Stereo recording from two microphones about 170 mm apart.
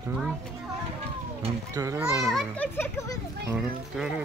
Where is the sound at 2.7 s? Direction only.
15° left (ahead or behind).